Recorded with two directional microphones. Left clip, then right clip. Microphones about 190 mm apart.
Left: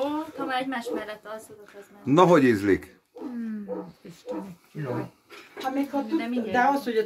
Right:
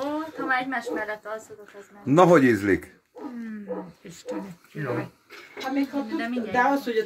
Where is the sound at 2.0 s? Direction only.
15° right (ahead or behind).